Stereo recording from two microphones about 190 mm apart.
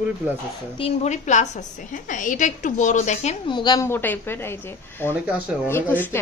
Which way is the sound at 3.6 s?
20° left (ahead or behind).